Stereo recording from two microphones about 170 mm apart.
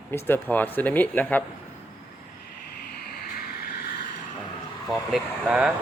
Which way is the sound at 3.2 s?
60° left (ahead or behind).